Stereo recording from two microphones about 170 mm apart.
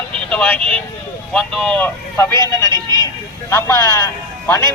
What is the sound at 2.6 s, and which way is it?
Speech, 25° right (ahead or behind).